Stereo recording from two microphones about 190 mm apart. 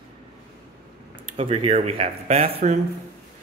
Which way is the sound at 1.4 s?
30° right (ahead or behind).